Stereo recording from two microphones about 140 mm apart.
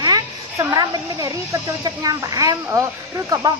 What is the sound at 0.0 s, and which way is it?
Speech, 25° right (ahead or behind).